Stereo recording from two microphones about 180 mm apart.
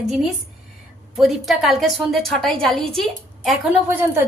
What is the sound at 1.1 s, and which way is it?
A woman's voice, centre (ahead or behind).